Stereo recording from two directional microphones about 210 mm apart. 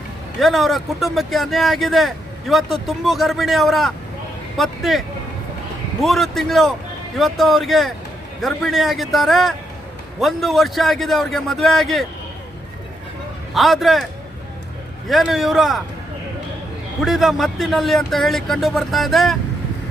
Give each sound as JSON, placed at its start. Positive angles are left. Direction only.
{"t": 0.3, "sound": "speech", "side_deg": 0}
{"t": 13.5, "sound": "speech", "side_deg": 0}
{"t": 17.0, "sound": "speech", "side_deg": 0}